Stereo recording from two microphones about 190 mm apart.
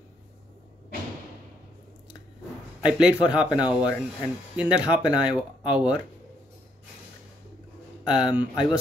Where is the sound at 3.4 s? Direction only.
20° left (ahead or behind).